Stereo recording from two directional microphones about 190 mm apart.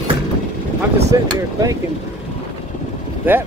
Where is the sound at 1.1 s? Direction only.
15° right (ahead or behind).